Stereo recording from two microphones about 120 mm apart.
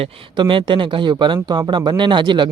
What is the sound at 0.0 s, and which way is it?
Speech, 45° right (ahead or behind).